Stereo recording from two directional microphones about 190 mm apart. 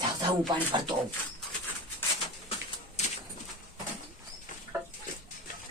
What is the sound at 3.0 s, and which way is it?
Pigeon, 35° left (ahead or behind).